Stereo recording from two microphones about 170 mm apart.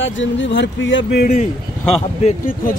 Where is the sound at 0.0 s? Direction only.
90° left.